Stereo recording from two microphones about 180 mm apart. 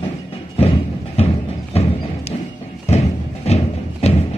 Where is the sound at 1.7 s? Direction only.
35° left (ahead or behind).